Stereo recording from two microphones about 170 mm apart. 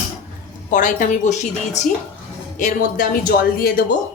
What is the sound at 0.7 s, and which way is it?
A woman's voice, 50° left (ahead or behind).